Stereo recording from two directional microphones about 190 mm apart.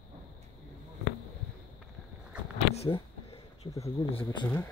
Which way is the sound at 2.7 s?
30° left (ahead or behind).